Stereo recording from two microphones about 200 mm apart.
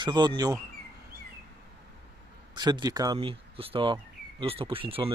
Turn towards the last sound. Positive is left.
turn(degrees=-25)  # may be behind; listen again after turning